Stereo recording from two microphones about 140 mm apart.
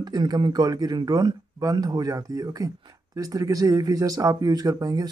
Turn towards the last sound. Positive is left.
turn(degrees=-25)  # may be behind; listen again after turning